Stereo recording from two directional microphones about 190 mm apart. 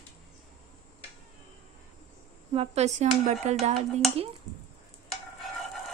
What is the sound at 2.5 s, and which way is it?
Speech, 35° right (ahead or behind).